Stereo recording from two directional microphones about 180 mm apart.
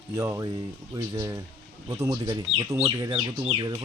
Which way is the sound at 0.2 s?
15° right (ahead or behind).